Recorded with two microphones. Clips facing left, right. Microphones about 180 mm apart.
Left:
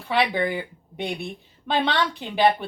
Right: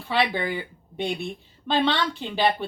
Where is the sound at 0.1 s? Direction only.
15° left (ahead or behind).